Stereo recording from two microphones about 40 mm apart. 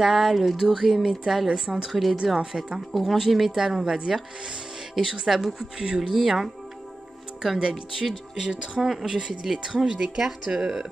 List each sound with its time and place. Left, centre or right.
0.0 s speech: centre
1.9 s speech: centre
2.3 s speech: centre
2.9 s speech: centre
5.9 s speech: centre
7.5 s speech: centre
8.8 s speech: centre